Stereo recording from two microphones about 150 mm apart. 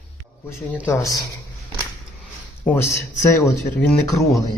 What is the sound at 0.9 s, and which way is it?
Speech, 20° left (ahead or behind).